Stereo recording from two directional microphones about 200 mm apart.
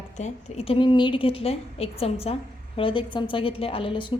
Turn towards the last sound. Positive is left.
turn(degrees=25)  # may be behind; listen again after turning